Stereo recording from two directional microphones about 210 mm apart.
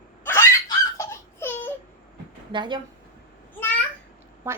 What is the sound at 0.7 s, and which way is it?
Baby laughter, 15° left (ahead or behind).